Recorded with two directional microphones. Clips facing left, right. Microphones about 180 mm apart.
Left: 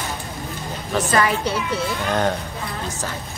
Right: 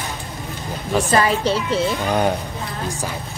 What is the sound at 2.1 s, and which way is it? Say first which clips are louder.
Speech: even; 10° right (ahead or behind).